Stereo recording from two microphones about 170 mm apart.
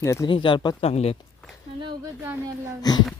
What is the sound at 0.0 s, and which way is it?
Speech, 15° left (ahead or behind).